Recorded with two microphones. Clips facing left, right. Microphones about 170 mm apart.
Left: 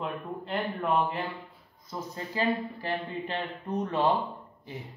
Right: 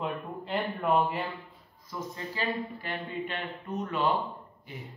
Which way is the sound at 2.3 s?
35° left (ahead or behind).